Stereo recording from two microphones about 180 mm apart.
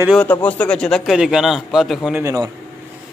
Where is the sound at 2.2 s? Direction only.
20° right (ahead or behind).